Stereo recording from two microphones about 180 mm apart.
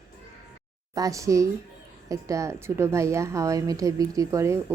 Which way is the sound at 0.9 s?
20° right (ahead or behind).